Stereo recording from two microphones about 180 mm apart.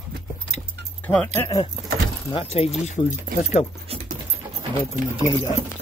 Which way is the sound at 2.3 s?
30° left (ahead or behind).